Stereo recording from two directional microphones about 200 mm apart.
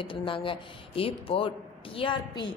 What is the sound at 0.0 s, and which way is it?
A woman's voice, 25° left (ahead or behind).